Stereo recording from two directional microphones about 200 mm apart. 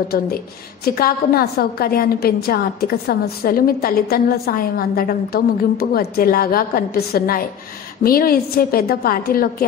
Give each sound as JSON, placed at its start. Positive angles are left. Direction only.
{"t": 0.8, "sound": "a woman's voice", "side_deg": 50}